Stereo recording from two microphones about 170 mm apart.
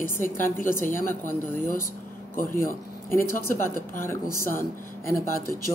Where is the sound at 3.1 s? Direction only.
15° left (ahead or behind).